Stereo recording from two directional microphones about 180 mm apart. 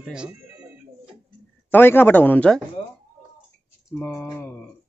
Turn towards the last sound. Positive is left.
turn(degrees=10)  # may be behind; listen again after turning